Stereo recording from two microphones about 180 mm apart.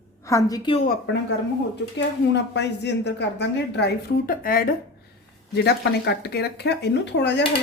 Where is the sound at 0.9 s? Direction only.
75° left (ahead or behind).